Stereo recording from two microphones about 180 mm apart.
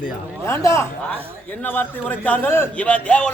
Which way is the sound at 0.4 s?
15° left (ahead or behind).